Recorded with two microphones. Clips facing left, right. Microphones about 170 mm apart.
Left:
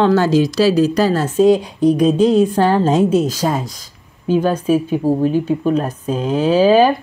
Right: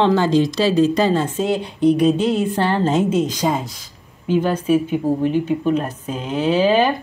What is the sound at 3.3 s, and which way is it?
Speech, 15° right (ahead or behind).